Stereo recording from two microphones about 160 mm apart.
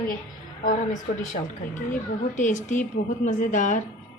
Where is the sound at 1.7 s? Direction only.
50° left (ahead or behind).